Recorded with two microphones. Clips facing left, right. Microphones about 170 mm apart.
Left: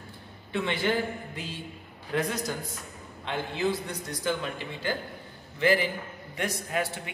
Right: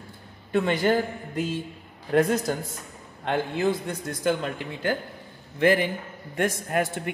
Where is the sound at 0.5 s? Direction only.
45° right (ahead or behind).